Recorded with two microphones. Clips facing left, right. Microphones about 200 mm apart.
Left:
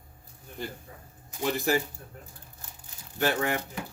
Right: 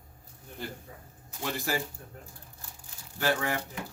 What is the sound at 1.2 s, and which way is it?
Speech, 15° left (ahead or behind).